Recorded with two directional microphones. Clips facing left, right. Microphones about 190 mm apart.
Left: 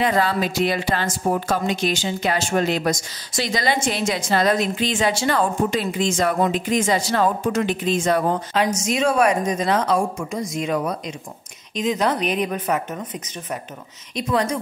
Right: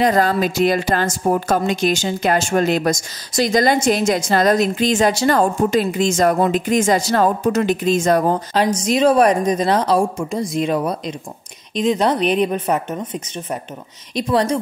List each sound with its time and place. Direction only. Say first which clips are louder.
0.0 s a woman's voice: right 4 dB; 45° right (ahead or behind)